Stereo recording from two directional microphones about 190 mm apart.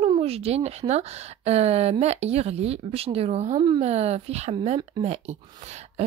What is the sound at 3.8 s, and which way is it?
Speech, 35° right (ahead or behind).